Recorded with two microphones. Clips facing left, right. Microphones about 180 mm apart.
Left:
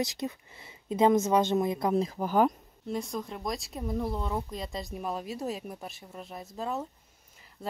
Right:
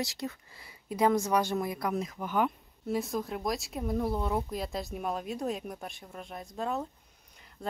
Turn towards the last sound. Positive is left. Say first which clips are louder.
# right 1 dB
turn(degrees=0)  # may be behind; listen again after turning